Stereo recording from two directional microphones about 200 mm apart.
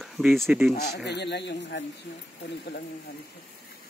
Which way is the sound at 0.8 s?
55° left (ahead or behind).